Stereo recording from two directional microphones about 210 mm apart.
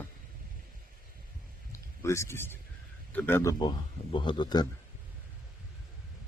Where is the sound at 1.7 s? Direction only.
15° left (ahead or behind).